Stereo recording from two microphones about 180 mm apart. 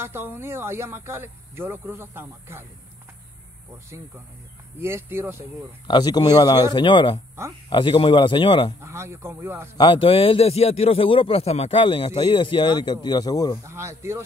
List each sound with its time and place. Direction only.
0.0 s speech: 10° right (ahead or behind)
4.7 s speech: 15° right (ahead or behind)
5.9 s a man's voice: 25° left (ahead or behind)
8.8 s speech: 15° right (ahead or behind)
9.8 s a man's voice: 30° left (ahead or behind)
13.7 s speech: 15° right (ahead or behind)